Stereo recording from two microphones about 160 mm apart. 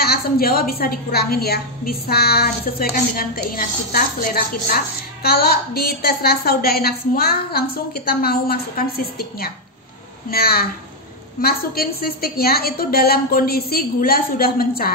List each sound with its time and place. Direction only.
0.0 s a woman's voice: 70° left (ahead or behind)